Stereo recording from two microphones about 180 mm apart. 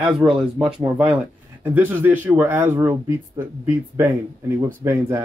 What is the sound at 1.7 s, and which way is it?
A man's voice, 10° right (ahead or behind).